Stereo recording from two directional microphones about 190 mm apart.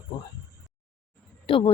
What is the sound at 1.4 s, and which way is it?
Speech, 30° left (ahead or behind).